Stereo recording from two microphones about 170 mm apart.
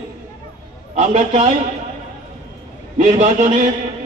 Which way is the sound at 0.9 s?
45° right (ahead or behind).